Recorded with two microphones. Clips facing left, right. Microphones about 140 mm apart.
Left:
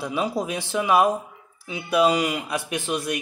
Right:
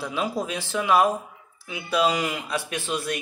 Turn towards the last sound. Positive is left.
turn(degrees=15)  # may be behind; listen again after turning